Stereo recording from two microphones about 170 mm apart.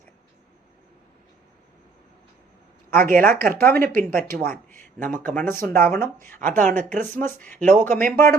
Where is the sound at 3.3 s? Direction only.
60° right (ahead or behind).